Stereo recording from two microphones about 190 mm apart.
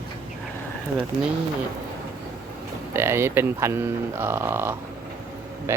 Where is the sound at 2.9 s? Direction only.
15° right (ahead or behind).